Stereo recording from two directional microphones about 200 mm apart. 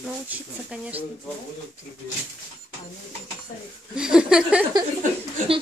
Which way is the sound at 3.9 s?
5° right (ahead or behind).